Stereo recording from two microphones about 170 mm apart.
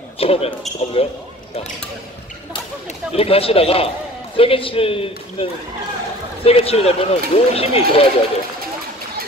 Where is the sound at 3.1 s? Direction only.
35° left (ahead or behind).